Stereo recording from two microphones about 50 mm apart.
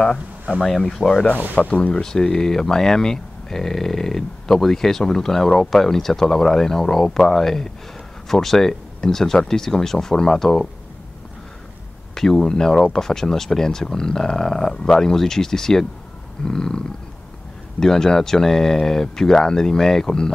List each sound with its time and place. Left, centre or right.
0.7 s speech: centre
12.2 s speech: centre